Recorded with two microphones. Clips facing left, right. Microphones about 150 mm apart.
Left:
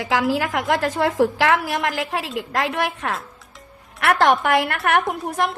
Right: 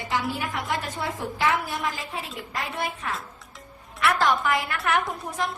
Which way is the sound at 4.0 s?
65° left (ahead or behind).